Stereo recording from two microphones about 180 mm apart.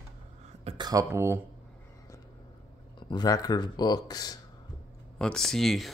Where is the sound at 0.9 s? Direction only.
15° right (ahead or behind).